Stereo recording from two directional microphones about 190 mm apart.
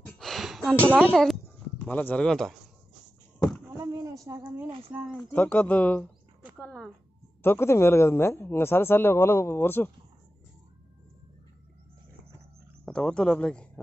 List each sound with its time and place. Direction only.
0.0 s a sound: 5° left (ahead or behind)
1.1 s speech: centre (ahead or behind)
3.7 s a sound: 20° right (ahead or behind)
4.9 s speech: 5° right (ahead or behind)
5.3 s speech: 5° left (ahead or behind)
12.8 s speech: 5° left (ahead or behind)